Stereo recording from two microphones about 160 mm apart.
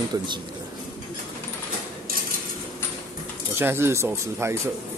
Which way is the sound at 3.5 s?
15° right (ahead or behind).